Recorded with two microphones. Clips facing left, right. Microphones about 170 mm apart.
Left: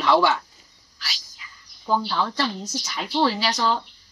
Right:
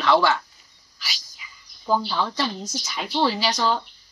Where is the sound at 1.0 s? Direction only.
5° right (ahead or behind).